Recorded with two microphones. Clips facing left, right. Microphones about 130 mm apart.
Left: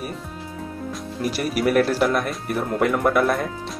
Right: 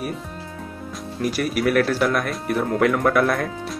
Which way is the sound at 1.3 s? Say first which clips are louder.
Even; 40° left (ahead or behind).